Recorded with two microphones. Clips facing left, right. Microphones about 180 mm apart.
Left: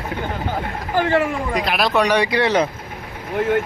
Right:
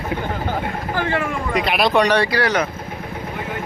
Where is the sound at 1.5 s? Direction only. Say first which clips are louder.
Right 4 dB; centre (ahead or behind); by 2.6 s 25° left (ahead or behind).